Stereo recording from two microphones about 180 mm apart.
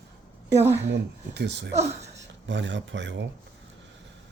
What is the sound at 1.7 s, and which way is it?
Speech, 35° right (ahead or behind).